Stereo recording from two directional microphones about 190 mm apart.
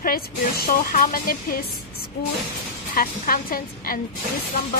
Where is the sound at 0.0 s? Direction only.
50° left (ahead or behind).